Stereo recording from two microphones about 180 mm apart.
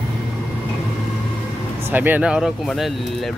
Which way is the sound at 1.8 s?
10° right (ahead or behind).